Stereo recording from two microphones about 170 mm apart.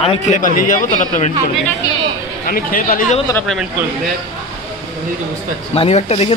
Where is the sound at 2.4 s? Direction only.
55° left (ahead or behind).